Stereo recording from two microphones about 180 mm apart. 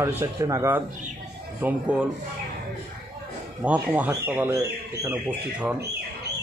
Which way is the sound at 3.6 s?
10° right (ahead or behind).